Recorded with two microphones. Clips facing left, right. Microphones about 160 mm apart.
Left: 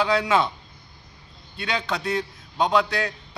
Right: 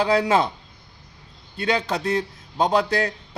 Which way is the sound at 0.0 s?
40° right (ahead or behind).